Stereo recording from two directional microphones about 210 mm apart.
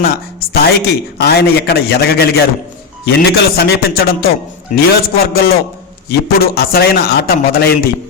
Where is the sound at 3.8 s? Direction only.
45° left (ahead or behind).